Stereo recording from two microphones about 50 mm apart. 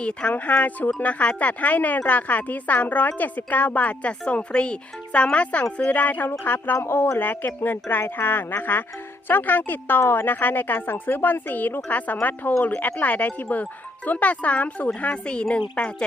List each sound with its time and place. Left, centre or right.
0.0 s a woman's voice: left
6.7 s speech: left
7.2 s a woman's voice: left